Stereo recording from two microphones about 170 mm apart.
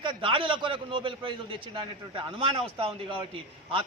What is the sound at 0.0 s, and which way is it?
A man's voice, 30° right (ahead or behind).